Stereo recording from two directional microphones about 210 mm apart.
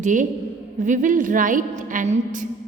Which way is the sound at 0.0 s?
35° right (ahead or behind).